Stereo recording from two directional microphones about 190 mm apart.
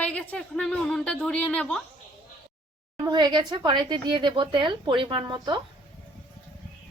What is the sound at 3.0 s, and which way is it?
Speech, 20° right (ahead or behind).